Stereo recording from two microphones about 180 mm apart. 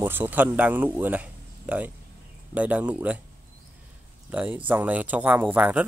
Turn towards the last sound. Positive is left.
turn(degrees=-10)  # may be behind; listen again after turning